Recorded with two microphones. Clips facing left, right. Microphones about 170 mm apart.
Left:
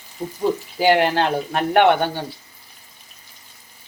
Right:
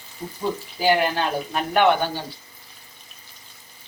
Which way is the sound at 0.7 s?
70° left (ahead or behind).